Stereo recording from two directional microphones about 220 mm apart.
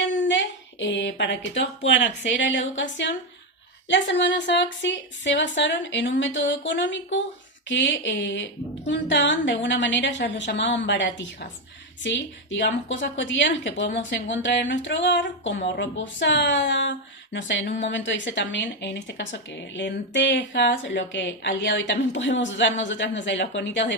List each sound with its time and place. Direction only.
0.0 s speech: 55° left (ahead or behind)